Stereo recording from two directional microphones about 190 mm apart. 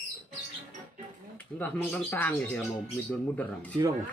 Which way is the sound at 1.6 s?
10° left (ahead or behind).